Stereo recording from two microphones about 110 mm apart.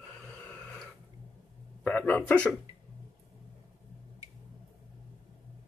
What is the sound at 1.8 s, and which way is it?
Speech, 15° left (ahead or behind).